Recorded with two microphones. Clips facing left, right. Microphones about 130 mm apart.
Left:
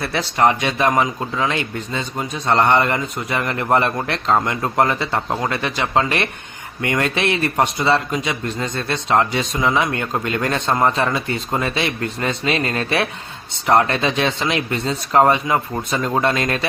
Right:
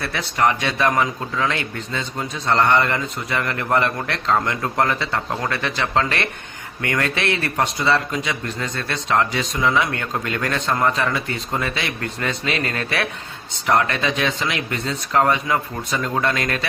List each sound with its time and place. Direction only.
0.0 s a man's voice: 25° left (ahead or behind)